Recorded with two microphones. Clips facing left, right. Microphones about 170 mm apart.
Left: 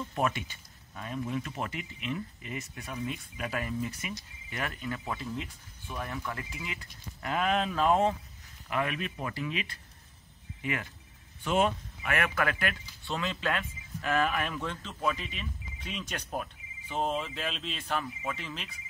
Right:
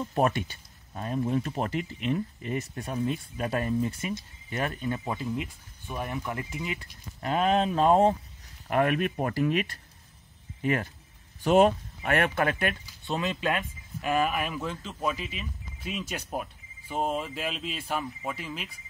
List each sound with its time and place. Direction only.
0.0 s speech: 40° right (ahead or behind)
5.0 s speech: 20° right (ahead or behind)
8.6 s speech: 50° right (ahead or behind); by 18.7 s 10° right (ahead or behind)